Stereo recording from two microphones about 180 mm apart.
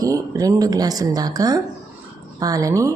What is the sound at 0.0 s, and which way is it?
A woman's voice, 20° right (ahead or behind).